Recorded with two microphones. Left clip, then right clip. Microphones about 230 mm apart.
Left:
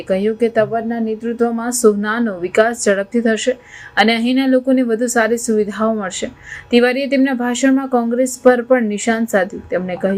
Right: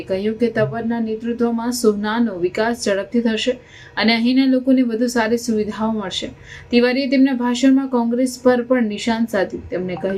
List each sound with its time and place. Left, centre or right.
0.1 s speech: centre